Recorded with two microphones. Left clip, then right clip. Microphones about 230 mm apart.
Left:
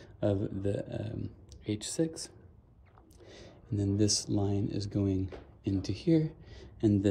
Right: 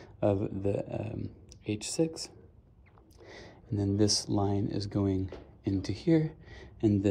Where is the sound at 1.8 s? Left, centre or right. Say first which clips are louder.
Right 3 dB; centre.